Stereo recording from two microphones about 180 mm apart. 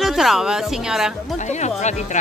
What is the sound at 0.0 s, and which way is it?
Speech, centre (ahead or behind).